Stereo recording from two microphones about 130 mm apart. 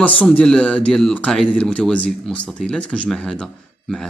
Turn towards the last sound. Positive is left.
turn(degrees=5)  # may be behind; listen again after turning